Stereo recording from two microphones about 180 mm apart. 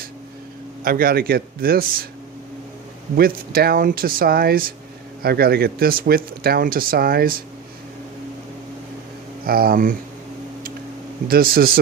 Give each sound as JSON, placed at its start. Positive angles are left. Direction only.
{"t": 0.9, "sound": "speech", "side_deg": -55}
{"t": 3.2, "sound": "speech", "side_deg": -55}
{"t": 9.4, "sound": "speech", "side_deg": -55}
{"t": 11.3, "sound": "speech", "side_deg": -55}